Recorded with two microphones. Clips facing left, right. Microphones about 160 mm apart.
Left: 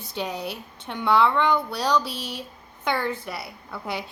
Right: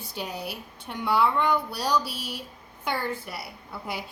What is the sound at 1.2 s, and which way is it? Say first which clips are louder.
Speech: left 2 dB; 80° left.